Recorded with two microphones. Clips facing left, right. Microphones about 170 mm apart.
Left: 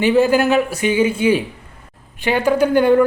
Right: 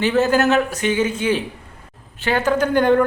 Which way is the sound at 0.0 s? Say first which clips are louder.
Left 3 dB; 10° left (ahead or behind).